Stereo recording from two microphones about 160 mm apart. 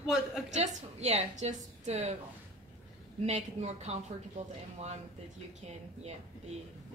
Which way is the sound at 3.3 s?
45° right (ahead or behind).